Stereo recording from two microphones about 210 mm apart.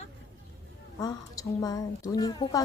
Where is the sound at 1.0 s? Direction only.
15° left (ahead or behind).